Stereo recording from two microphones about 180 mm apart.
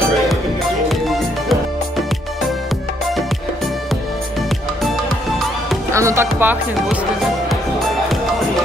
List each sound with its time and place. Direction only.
0.8 s music: centre (ahead or behind)
5.9 s music: 15° right (ahead or behind)
6.2 s speech: 10° right (ahead or behind)